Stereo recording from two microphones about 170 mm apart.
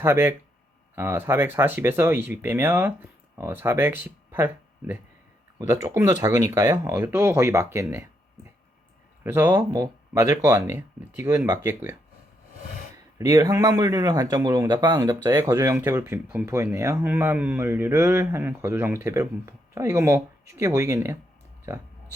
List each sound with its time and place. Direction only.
0.0 s speech: 15° right (ahead or behind)
9.2 s speech: 15° right (ahead or behind)
13.1 s speech: 20° right (ahead or behind)